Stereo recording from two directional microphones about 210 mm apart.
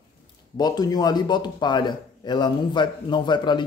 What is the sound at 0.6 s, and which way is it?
A man's voice, 20° left (ahead or behind).